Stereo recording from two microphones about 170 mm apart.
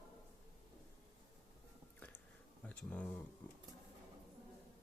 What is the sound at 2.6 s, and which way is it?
Speech, 5° left (ahead or behind).